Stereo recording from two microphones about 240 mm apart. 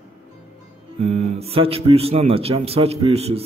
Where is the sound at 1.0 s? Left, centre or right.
Right.